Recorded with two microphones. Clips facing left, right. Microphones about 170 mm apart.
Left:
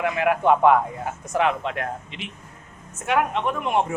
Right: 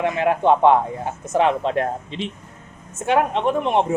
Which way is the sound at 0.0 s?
25° right (ahead or behind).